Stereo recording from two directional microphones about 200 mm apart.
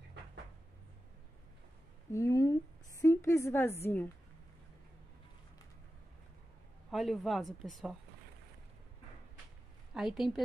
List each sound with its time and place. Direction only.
2.1 s a sound: 15° left (ahead or behind)
6.9 s speech: centre (ahead or behind)
9.9 s speech: centre (ahead or behind)